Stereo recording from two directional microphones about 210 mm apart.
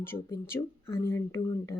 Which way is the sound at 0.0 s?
10° left (ahead or behind).